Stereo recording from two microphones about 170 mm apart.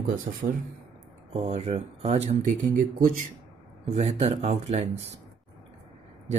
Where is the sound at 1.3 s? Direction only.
40° right (ahead or behind).